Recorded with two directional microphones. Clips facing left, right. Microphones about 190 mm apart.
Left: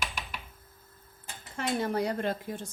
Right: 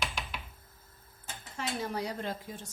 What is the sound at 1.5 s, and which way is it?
Speech, 55° left (ahead or behind).